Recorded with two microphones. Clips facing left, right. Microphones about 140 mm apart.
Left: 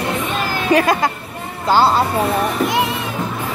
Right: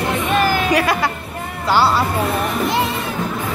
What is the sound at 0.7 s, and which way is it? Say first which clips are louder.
Speech: left 3 dB; 25° left (ahead or behind).